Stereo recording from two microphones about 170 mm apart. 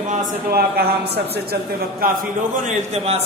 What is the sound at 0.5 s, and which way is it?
A woman's voice, 70° right (ahead or behind).